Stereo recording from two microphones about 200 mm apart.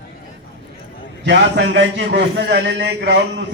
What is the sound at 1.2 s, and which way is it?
A man's voice, 60° right (ahead or behind).